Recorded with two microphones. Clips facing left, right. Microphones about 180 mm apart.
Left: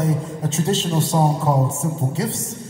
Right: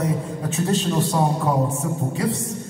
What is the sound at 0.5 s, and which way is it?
Speech, 90° left.